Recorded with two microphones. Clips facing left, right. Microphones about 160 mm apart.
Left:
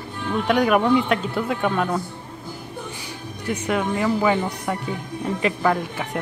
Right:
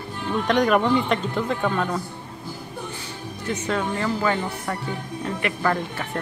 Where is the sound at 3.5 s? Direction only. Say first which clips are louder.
Left 2 dB; 10° left (ahead or behind).